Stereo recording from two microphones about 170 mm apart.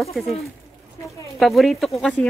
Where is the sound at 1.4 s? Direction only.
Centre (ahead or behind).